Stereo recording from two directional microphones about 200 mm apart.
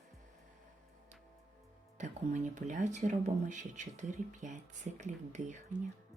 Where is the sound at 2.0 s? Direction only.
35° right (ahead or behind).